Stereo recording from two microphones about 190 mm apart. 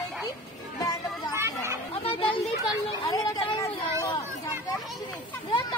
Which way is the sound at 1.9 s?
30° left (ahead or behind).